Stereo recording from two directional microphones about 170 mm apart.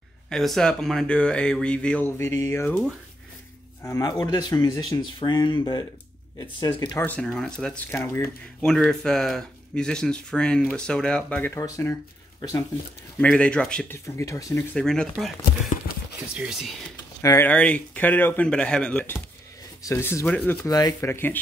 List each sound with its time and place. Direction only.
0.3 s speech: centre (ahead or behind)
3.8 s speech: 20° left (ahead or behind)
7.0 s speech: 5° left (ahead or behind)
13.2 s speech: 5° left (ahead or behind)
14.0 s speech: 15° left (ahead or behind)
14.8 s speech: 5° left (ahead or behind)
16.9 s a sound: 20° left (ahead or behind)
17.5 s speech: 10° left (ahead or behind)
20.6 s speech: 20° left (ahead or behind)